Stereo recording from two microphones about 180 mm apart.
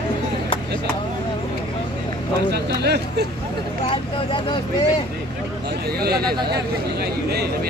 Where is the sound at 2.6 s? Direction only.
65° right (ahead or behind).